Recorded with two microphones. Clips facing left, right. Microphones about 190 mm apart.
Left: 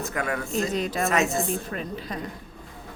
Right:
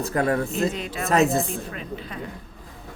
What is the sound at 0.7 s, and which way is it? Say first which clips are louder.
Speech: left 4 dB; 40° left (ahead or behind).